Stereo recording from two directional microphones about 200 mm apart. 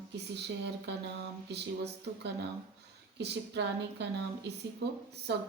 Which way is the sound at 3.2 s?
60° right (ahead or behind).